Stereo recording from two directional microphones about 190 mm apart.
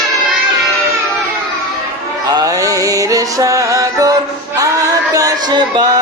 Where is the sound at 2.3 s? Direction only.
20° right (ahead or behind).